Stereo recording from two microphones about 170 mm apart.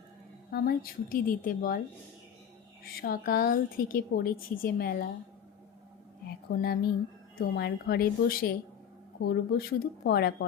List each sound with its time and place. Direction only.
0.5 s a woman's voice: 60° left (ahead or behind)
3.0 s a woman's voice: 60° left (ahead or behind)
6.2 s a woman's voice: 65° left (ahead or behind)